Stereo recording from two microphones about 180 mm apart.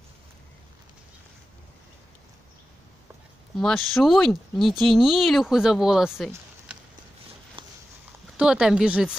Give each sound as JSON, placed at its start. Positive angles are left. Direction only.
{"t": 3.5, "sound": "speech", "side_deg": 0}
{"t": 7.6, "sound": "a sound", "side_deg": -30}
{"t": 8.4, "sound": "speech", "side_deg": -5}